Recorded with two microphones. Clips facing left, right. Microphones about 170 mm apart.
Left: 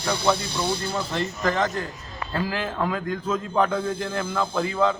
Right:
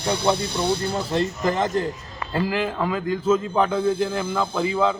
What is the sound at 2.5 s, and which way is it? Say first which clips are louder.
A man's voice: right 2 dB; 5° right (ahead or behind).